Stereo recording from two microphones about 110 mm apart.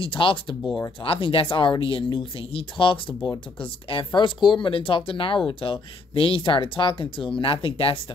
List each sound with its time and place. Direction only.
0.0 s speech: 55° left (ahead or behind)